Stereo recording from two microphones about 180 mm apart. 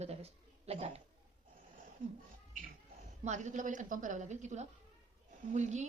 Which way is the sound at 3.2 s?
40° right (ahead or behind).